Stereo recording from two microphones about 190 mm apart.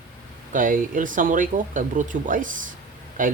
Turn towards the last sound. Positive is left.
turn(degrees=-45)  # may be behind; listen again after turning